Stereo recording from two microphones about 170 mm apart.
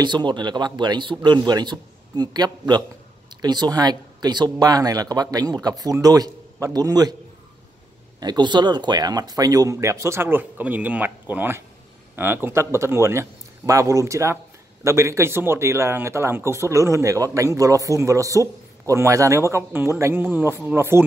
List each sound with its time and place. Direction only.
0.0 s speech: 25° right (ahead or behind)
8.2 s speech: 25° right (ahead or behind)